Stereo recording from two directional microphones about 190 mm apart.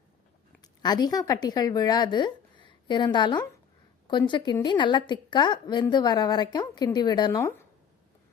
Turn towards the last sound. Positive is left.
turn(degrees=20)  # may be behind; listen again after turning